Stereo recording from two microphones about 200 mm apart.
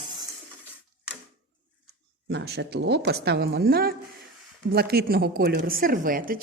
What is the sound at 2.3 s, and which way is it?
Speech, 55° right (ahead or behind).